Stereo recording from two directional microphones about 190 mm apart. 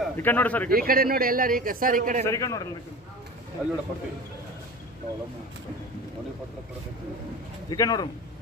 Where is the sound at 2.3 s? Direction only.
15° left (ahead or behind).